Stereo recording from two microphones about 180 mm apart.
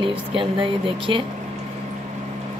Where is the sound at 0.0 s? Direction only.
30° right (ahead or behind).